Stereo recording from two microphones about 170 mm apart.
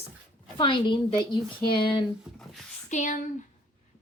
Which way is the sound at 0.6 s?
30° left (ahead or behind).